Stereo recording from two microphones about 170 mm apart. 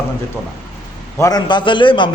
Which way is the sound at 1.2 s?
25° left (ahead or behind).